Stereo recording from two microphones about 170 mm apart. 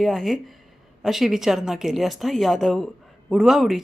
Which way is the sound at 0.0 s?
Centre (ahead or behind).